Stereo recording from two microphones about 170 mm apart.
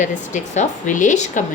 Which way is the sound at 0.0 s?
45° left (ahead or behind).